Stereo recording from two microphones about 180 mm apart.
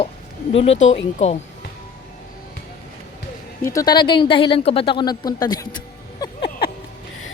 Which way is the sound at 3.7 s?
20° left (ahead or behind).